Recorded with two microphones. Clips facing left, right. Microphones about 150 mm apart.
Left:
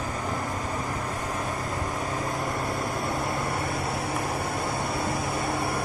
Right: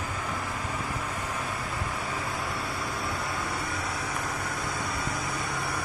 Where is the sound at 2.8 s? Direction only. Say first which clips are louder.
Left 4 dB; 20° left (ahead or behind).